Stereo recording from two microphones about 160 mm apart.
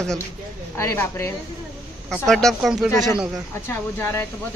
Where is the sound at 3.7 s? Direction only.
15° left (ahead or behind).